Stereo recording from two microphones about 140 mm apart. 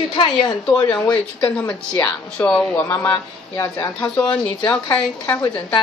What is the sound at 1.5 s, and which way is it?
Speech, 10° left (ahead or behind).